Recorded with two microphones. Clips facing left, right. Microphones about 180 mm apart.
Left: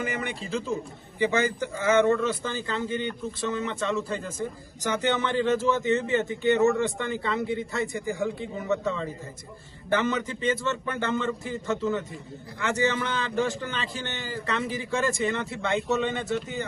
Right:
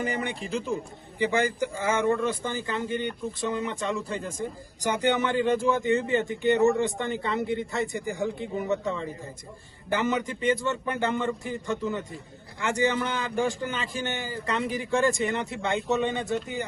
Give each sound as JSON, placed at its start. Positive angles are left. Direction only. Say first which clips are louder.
{"t": 0.0, "sound": "speech", "louder": "right 1 dB", "side_deg": -15}